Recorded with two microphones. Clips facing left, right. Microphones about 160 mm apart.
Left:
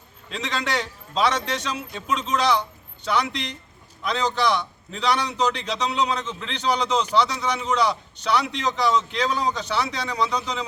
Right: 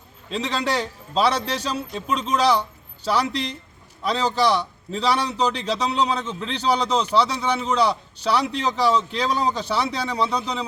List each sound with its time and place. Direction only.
0.3 s a man's voice: 30° right (ahead or behind)